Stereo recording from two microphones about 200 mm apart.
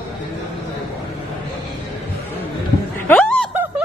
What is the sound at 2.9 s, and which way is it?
Snicker, 10° left (ahead or behind).